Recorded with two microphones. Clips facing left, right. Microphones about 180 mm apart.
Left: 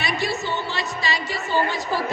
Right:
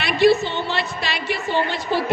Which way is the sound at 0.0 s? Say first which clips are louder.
Right 10 dB; 65° right (ahead or behind).